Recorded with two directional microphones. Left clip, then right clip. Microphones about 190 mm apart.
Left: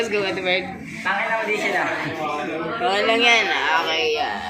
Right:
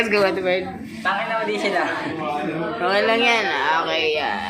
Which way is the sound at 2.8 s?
25° right (ahead or behind).